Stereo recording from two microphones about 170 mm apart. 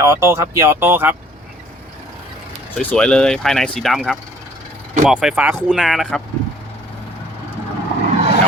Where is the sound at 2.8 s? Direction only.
10° left (ahead or behind).